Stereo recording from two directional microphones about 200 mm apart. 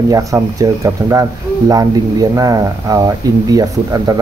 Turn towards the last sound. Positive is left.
turn(degrees=-20)  # may be behind; listen again after turning